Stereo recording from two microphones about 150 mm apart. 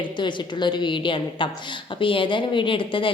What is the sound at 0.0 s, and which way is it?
A woman's voice, 30° left (ahead or behind).